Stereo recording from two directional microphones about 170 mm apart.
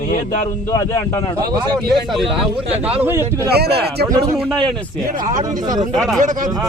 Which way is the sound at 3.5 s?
70° right (ahead or behind).